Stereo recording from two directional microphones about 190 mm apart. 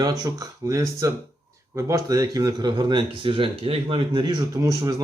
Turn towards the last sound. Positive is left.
turn(degrees=-20)  # may be behind; listen again after turning